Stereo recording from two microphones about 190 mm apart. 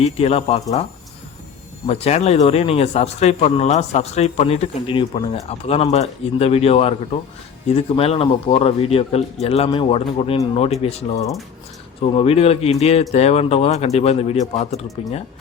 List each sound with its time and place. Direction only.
0.0 s a man's voice: 30° left (ahead or behind)
1.9 s a man's voice: 35° left (ahead or behind)